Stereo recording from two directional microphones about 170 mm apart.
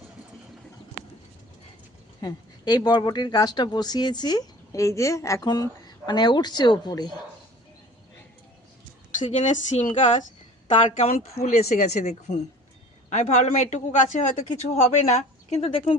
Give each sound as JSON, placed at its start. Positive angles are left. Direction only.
{"t": 2.2, "sound": "speech", "side_deg": 25}
{"t": 9.3, "sound": "speech", "side_deg": 45}